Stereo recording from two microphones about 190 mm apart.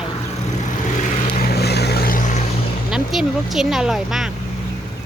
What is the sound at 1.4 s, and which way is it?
Vehicle, 60° left (ahead or behind).